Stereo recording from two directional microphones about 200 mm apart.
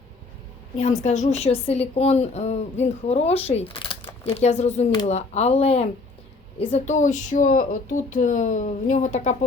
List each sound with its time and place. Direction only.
0.8 s a woman's voice: 35° left (ahead or behind)